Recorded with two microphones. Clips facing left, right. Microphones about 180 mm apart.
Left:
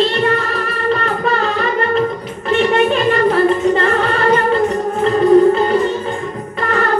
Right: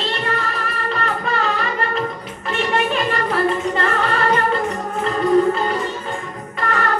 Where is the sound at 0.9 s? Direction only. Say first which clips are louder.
Left 6 dB; 35° left (ahead or behind).